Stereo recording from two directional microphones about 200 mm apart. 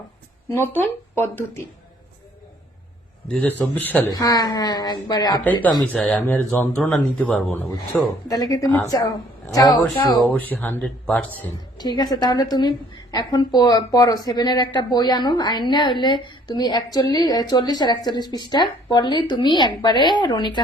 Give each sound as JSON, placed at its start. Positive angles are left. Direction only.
{"t": 0.5, "sound": "speech", "side_deg": 10}
{"t": 3.2, "sound": "a woman's voice", "side_deg": 5}
{"t": 5.4, "sound": "speech", "side_deg": 10}
{"t": 8.3, "sound": "a woman's voice", "side_deg": 15}
{"t": 10.2, "sound": "speech", "side_deg": 10}
{"t": 11.8, "sound": "a woman's voice", "side_deg": 20}